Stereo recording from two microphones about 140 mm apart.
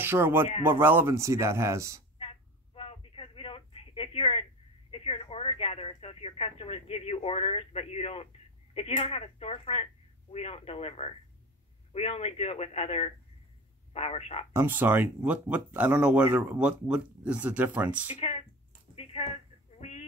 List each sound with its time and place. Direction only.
0.0 s speech: 15° right (ahead or behind)
2.1 s a sound: 40° left (ahead or behind)
4.9 s speech: 45° left (ahead or behind)
14.5 s speech: 15° right (ahead or behind)
18.1 s speech: 45° left (ahead or behind)
18.9 s a sound: 45° left (ahead or behind)